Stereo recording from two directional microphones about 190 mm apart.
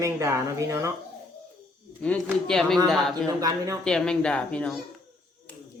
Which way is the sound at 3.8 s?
5° left (ahead or behind).